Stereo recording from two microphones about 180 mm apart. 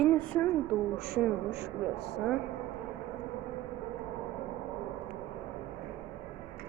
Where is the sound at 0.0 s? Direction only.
5° left (ahead or behind).